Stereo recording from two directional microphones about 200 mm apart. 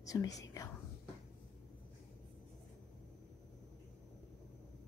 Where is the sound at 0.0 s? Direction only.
15° left (ahead or behind).